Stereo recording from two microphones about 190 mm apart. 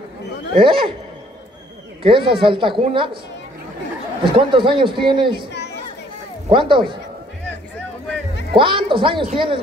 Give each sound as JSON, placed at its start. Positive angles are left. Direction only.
{"t": 0.6, "sound": "a woman's voice", "side_deg": -30}
{"t": 2.0, "sound": "a woman's voice", "side_deg": -25}
{"t": 4.2, "sound": "a woman's voice", "side_deg": -25}
{"t": 5.5, "sound": "chatter", "side_deg": 60}
{"t": 6.5, "sound": "a woman's voice", "side_deg": -25}
{"t": 8.5, "sound": "a woman's voice", "side_deg": -25}